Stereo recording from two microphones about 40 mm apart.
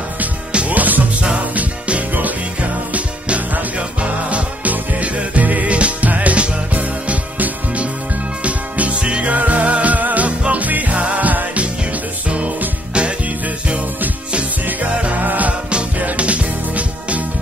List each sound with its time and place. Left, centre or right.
0.5 s music: right
0.7 s music: right
12.3 s music: right
14.7 s music: right